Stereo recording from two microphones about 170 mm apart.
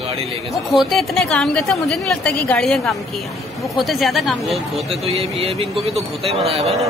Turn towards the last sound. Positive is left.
turn(degrees=0)  # may be behind; listen again after turning